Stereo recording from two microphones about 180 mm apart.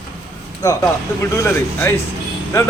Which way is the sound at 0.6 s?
20° left (ahead or behind).